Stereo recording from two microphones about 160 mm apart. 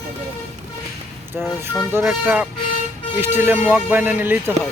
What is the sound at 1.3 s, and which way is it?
Speech, 10° right (ahead or behind).